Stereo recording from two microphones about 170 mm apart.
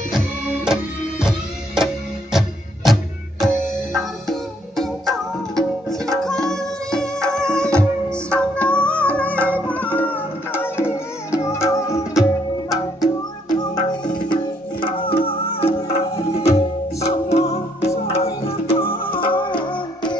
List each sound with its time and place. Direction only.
2.9 s tabla: centre (ahead or behind)
8.6 s music: 5° left (ahead or behind); by 13.9 s 25° left (ahead or behind)
14.1 s tabla: 30° left (ahead or behind)
15.1 s music: 35° left (ahead or behind)